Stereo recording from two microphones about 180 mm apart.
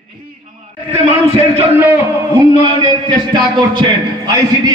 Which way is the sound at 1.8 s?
15° right (ahead or behind).